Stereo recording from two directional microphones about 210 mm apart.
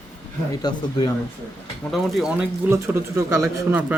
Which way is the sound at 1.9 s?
Centre (ahead or behind).